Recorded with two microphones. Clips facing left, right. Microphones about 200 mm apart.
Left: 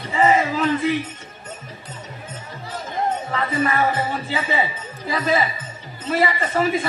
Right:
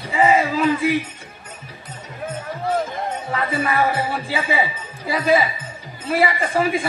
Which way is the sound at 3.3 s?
10° right (ahead or behind).